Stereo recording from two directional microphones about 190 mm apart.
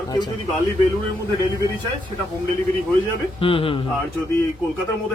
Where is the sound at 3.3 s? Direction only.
30° left (ahead or behind).